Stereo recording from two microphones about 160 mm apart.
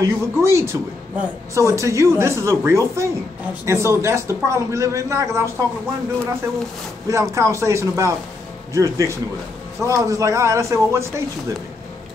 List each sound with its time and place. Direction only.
0.0 s a man's voice: 20° right (ahead or behind)
7.1 s a man's voice: 20° right (ahead or behind)